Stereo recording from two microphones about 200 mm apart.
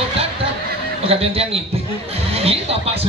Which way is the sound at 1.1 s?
30° right (ahead or behind).